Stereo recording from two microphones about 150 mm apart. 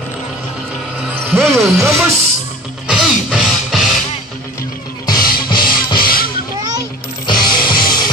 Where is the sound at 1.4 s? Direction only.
Centre (ahead or behind).